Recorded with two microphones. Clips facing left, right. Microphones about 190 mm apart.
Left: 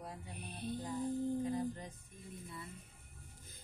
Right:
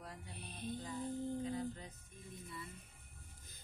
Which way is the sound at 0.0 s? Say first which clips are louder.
Left 3 dB; 10° left (ahead or behind).